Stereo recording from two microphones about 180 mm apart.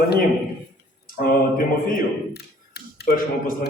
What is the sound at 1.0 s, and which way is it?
A man's voice, 50° left (ahead or behind).